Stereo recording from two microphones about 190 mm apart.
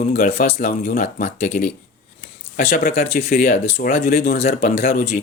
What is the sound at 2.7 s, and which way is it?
Speech, 50° left (ahead or behind).